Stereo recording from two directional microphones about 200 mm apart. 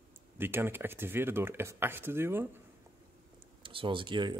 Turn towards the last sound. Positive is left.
turn(degrees=-25)  # may be behind; listen again after turning